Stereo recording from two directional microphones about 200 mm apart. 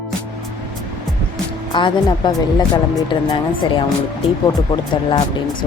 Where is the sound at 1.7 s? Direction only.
25° left (ahead or behind).